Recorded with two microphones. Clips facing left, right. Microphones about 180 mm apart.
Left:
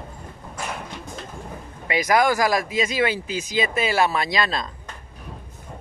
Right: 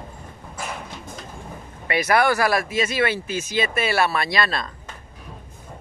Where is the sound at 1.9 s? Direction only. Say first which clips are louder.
Even; 15° left (ahead or behind).